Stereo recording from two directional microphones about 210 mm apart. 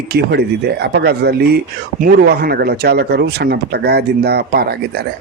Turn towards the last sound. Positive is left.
turn(degrees=-50)  # may be behind; listen again after turning